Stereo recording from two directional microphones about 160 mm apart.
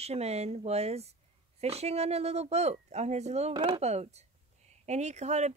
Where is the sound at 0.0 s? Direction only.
40° right (ahead or behind).